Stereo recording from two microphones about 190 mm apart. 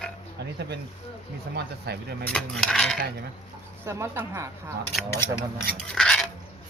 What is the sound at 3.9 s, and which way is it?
Speech, 15° right (ahead or behind).